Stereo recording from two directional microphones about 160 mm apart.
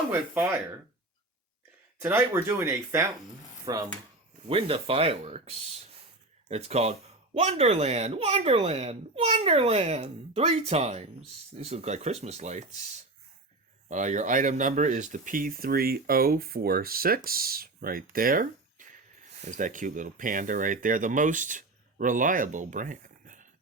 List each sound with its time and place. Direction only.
0.1 s speech: 10° right (ahead or behind)
2.0 s speech: 15° right (ahead or behind)
4.4 s speech: 35° right (ahead or behind); by 23.5 s 55° right (ahead or behind)